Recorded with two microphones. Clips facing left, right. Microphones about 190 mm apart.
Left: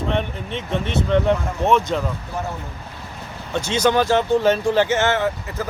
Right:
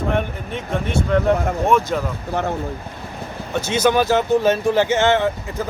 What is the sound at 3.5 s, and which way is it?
Speech, 10° right (ahead or behind).